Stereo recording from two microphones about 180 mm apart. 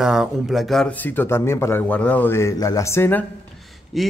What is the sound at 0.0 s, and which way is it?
Speech, centre (ahead or behind).